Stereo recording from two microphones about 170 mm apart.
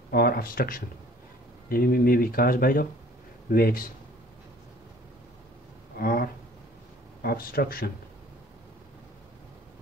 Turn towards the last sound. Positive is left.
turn(degrees=65)  # may be behind; listen again after turning